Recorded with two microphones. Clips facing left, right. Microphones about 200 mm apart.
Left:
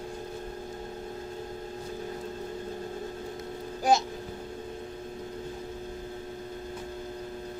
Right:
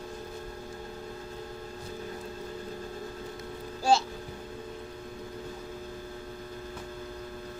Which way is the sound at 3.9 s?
15° left (ahead or behind).